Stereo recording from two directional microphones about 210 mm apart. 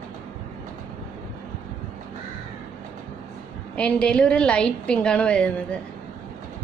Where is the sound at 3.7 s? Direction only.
5° left (ahead or behind).